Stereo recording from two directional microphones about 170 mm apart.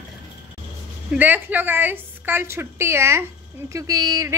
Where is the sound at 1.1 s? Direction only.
10° right (ahead or behind).